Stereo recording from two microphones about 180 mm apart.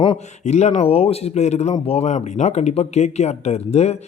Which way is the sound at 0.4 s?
40° left (ahead or behind).